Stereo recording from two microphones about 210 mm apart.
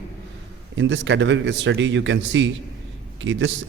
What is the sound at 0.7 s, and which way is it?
Speech, 60° right (ahead or behind).